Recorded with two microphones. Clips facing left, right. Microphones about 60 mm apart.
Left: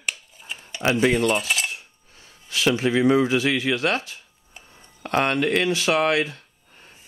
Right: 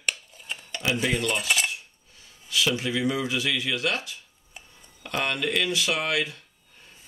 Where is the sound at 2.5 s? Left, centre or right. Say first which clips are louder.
Left 5 dB; left.